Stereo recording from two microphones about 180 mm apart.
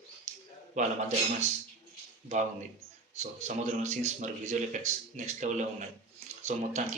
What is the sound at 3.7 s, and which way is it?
Speech, 40° right (ahead or behind).